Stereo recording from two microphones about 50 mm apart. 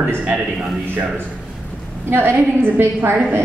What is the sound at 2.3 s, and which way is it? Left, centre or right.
A woman's voice, right.